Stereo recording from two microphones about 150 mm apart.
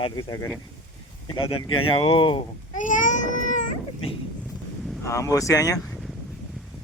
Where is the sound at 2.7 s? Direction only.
60° left (ahead or behind).